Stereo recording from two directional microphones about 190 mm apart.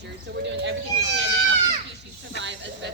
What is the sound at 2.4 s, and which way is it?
Snake, 70° right (ahead or behind).